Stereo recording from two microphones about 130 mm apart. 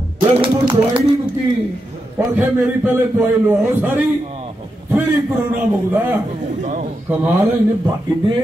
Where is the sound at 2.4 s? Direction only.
15° right (ahead or behind).